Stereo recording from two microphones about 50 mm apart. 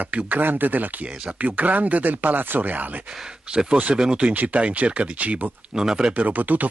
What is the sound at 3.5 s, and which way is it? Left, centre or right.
Speech, centre.